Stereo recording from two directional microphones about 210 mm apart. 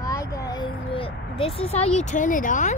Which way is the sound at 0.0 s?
15° left (ahead or behind).